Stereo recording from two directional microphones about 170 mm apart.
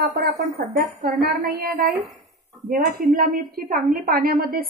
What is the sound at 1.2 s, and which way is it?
A woman's voice, 60° right (ahead or behind).